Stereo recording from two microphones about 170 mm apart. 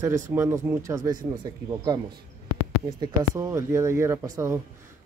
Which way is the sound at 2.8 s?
25° right (ahead or behind).